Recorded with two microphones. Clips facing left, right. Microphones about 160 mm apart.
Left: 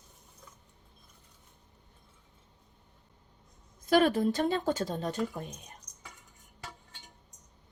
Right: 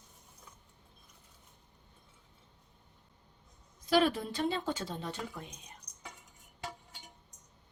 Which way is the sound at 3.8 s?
50° left (ahead or behind).